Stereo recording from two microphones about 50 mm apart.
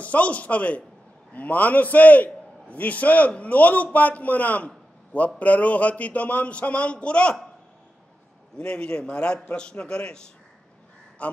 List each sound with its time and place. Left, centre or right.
0.0 s a man's voice: left
4.6 s a sound: left
5.4 s speech: left
8.5 s speech: centre